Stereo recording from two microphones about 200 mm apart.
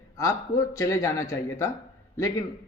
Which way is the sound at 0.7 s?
15° left (ahead or behind).